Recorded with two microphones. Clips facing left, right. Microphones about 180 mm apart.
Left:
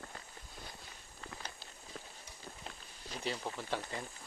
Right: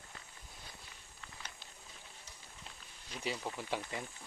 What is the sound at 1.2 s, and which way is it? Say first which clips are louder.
Walk: left 5 dB; 35° left (ahead or behind).